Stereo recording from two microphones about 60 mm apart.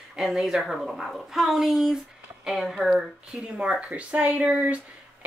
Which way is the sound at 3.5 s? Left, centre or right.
Centre.